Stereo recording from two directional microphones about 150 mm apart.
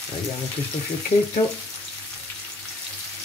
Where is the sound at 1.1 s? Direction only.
40° left (ahead or behind).